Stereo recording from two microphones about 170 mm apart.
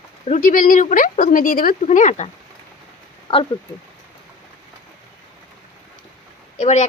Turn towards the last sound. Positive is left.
turn(degrees=45)  # may be behind; listen again after turning